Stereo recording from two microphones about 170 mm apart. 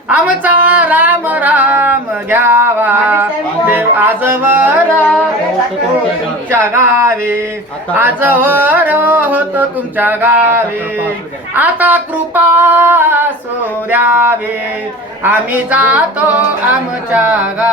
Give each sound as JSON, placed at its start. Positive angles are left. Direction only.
{"t": 0.1, "sound": "singing", "side_deg": -10}
{"t": 2.3, "sound": "male singing", "side_deg": -10}
{"t": 3.7, "sound": "music", "side_deg": -10}
{"t": 6.5, "sound": "a sound", "side_deg": -15}